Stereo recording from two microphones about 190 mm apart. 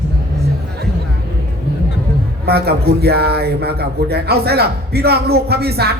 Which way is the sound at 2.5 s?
55° right (ahead or behind).